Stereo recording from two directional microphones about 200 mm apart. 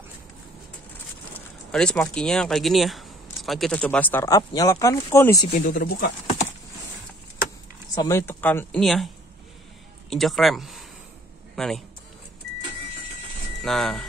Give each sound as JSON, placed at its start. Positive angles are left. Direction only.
{"t": 1.7, "sound": "speech", "side_deg": 5}
{"t": 5.7, "sound": "speech", "side_deg": 45}
{"t": 7.9, "sound": "a man's voice", "side_deg": 15}
{"t": 13.6, "sound": "speech", "side_deg": 0}